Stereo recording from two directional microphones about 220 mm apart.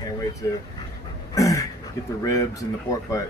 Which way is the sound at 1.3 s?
15° left (ahead or behind).